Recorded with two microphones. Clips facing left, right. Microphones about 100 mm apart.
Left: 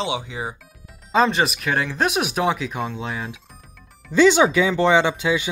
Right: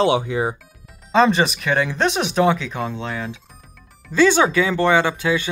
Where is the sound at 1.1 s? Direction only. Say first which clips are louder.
Right 3 dB; centre (ahead or behind).